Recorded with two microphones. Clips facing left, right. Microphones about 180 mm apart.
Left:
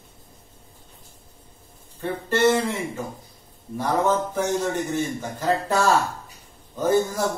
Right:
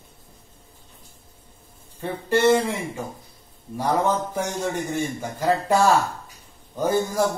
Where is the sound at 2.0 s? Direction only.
10° right (ahead or behind).